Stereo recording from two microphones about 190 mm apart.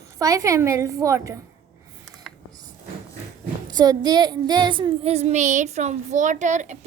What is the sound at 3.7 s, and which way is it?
Child singing, 20° right (ahead or behind).